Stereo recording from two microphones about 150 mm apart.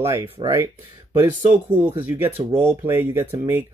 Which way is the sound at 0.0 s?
20° right (ahead or behind).